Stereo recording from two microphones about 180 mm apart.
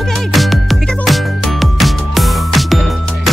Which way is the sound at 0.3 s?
Centre (ahead or behind).